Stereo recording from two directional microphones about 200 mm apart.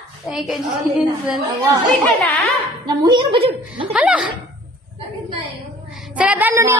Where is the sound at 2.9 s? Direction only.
20° right (ahead or behind).